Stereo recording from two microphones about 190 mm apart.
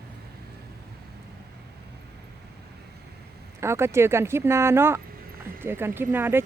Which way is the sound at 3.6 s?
15° right (ahead or behind).